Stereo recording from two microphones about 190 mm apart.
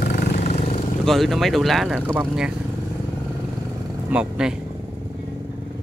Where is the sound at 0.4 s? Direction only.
35° left (ahead or behind).